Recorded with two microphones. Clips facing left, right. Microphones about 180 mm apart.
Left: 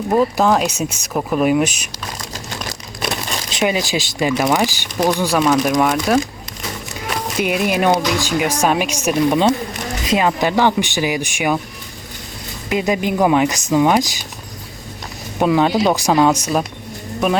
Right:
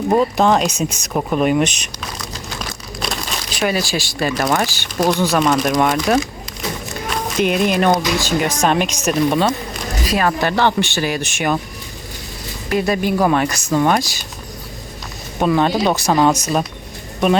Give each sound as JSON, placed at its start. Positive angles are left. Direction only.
{"t": 0.2, "sound": "speech", "side_deg": 5}
{"t": 3.5, "sound": "speech", "side_deg": 20}
{"t": 7.3, "sound": "speech", "side_deg": 5}
{"t": 12.6, "sound": "speech", "side_deg": 15}
{"t": 15.4, "sound": "speech", "side_deg": 10}